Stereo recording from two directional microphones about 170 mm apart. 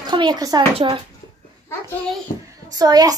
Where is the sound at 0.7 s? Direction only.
35° right (ahead or behind).